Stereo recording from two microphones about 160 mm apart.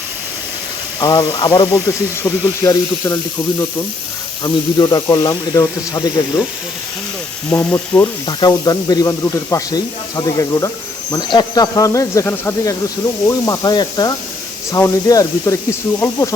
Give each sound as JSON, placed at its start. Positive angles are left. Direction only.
{"t": 0.9, "sound": "speech", "side_deg": 25}
{"t": 4.4, "sound": "speech", "side_deg": 25}
{"t": 7.5, "sound": "frying", "side_deg": 15}
{"t": 8.3, "sound": "speech", "side_deg": 25}